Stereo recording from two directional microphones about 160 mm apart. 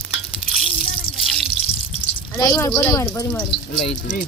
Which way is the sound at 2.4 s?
20° left (ahead or behind).